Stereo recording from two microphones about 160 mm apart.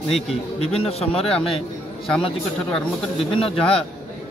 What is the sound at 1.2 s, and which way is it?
Speech, 5° left (ahead or behind).